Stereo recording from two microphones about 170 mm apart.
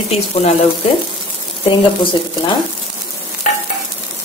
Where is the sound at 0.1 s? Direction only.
40° left (ahead or behind).